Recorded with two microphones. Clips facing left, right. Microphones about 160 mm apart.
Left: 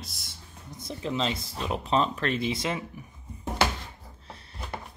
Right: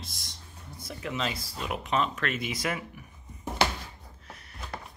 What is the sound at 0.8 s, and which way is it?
Speech, 25° left (ahead or behind).